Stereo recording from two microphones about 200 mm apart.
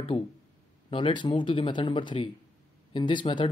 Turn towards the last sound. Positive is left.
turn(degrees=25)  # may be behind; listen again after turning